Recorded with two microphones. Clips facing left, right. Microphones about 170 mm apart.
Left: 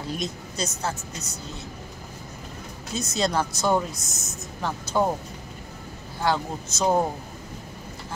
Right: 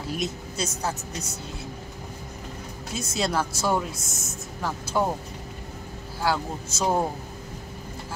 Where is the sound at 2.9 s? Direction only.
5° right (ahead or behind).